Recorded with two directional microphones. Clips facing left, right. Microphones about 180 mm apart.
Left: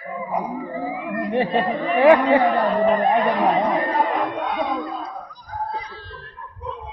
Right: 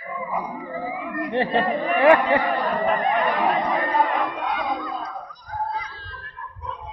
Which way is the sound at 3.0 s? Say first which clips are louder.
Left 4 dB; 35° left (ahead or behind).